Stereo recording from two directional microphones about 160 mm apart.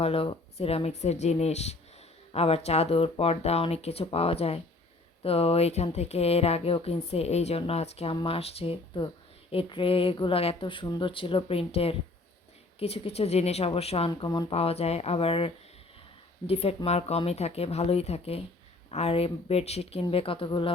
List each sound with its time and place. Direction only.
0.0 s speech: 35° left (ahead or behind)
14.1 s speech: 25° left (ahead or behind)
14.5 s speech: 40° left (ahead or behind)